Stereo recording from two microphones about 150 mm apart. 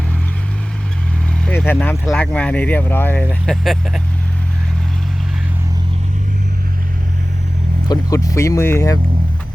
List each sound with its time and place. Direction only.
1.5 s speech: 15° left (ahead or behind)
3.4 s speech: centre (ahead or behind)
7.9 s speech: 20° left (ahead or behind)